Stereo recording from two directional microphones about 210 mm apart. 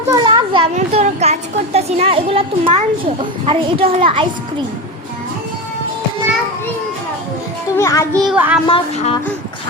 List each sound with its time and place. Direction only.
0.1 s a child's voice: 20° right (ahead or behind)
7.8 s a child's voice: 15° left (ahead or behind)
8.2 s speech: 5° right (ahead or behind)
8.6 s speech: 25° left (ahead or behind)